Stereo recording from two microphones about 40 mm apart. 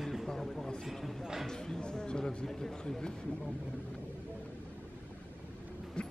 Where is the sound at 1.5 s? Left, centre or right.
Centre.